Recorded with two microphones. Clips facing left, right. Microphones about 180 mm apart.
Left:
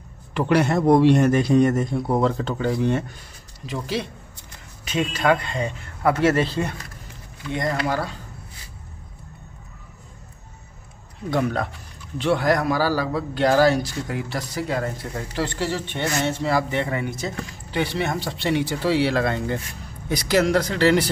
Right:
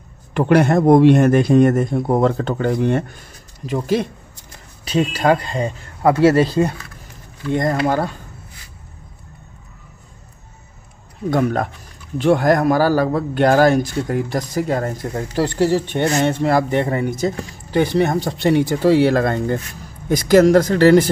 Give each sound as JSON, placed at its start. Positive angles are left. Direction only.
{"t": 0.3, "sound": "a man's voice", "side_deg": -50}
{"t": 4.8, "sound": "a man's voice", "side_deg": -35}
{"t": 11.2, "sound": "a man's voice", "side_deg": -50}